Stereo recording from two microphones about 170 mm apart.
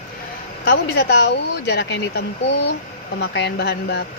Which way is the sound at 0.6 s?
80° left.